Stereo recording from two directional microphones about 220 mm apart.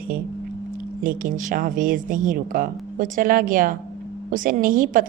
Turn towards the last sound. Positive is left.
turn(degrees=-40)  # may be behind; listen again after turning